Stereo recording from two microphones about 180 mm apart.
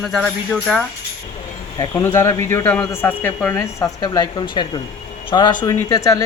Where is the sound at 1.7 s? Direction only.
20° left (ahead or behind).